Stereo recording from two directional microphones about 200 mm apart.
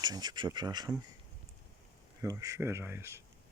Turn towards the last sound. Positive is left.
turn(degrees=-10)  # may be behind; listen again after turning